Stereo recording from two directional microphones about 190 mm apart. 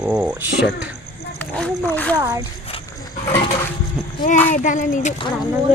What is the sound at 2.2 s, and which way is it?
Speech, 15° right (ahead or behind).